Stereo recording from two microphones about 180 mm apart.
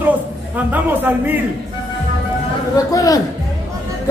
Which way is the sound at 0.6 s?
10° right (ahead or behind).